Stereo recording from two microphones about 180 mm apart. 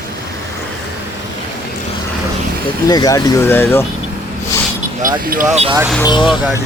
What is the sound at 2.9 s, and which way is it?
Speech, 20° left (ahead or behind).